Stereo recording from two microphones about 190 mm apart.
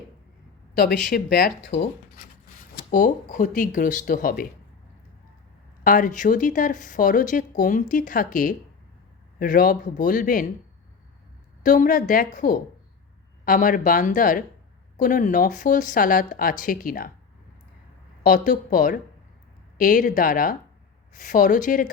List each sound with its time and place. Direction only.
1.1 s speech: 55° left (ahead or behind)
2.9 s speech: 45° left (ahead or behind)
5.8 s speech: 45° left (ahead or behind)
11.6 s speech: 40° left (ahead or behind)
18.2 s speech: 45° left (ahead or behind)